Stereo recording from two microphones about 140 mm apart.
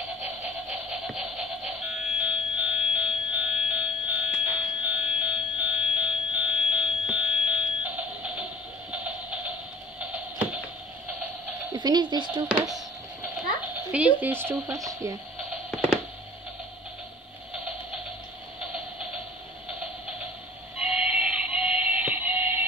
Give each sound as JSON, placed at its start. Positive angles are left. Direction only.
{"t": 0.2, "sound": "music", "side_deg": -10}
{"t": 4.8, "sound": "a sound", "side_deg": -5}
{"t": 11.7, "sound": "a woman's voice", "side_deg": -30}
{"t": 13.9, "sound": "speech", "side_deg": -10}
{"t": 20.7, "sound": "music", "side_deg": -5}